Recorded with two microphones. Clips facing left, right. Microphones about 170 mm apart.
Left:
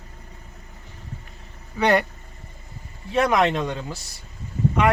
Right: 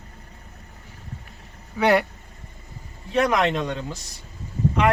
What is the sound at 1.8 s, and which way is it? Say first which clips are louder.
Speech: right 1 dB; centre (ahead or behind).